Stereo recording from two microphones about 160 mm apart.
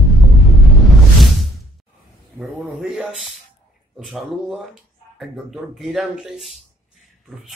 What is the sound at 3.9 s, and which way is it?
Speech, centre (ahead or behind).